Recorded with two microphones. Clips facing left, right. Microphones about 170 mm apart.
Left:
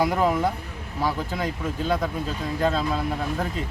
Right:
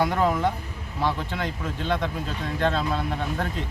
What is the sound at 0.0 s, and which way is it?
Speech, 10° left (ahead or behind).